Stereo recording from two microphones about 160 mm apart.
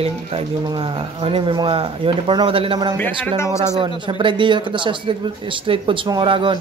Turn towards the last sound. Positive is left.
turn(degrees=-30)  # may be behind; listen again after turning